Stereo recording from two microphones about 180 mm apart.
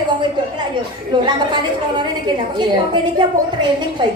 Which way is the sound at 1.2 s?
25° right (ahead or behind).